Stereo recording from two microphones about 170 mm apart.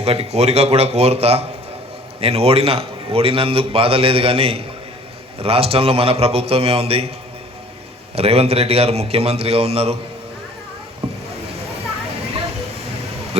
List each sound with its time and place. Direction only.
0.0 s a man's voice: 35° right (ahead or behind)
8.1 s a man's voice: 35° right (ahead or behind)
11.0 s boat: 35° right (ahead or behind)